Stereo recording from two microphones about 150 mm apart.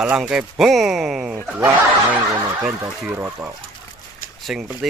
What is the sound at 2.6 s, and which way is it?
Speech, 10° right (ahead or behind).